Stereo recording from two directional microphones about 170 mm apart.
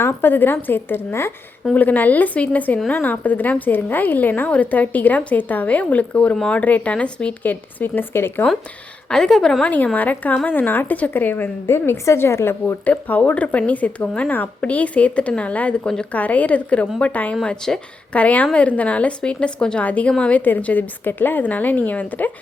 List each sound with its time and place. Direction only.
0.0 s a woman's voice: 10° left (ahead or behind)